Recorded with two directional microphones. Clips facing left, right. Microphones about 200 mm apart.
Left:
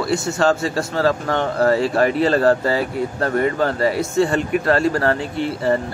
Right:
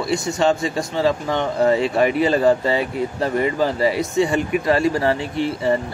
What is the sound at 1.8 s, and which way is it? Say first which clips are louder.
Speech: left 1 dB; 5° right (ahead or behind).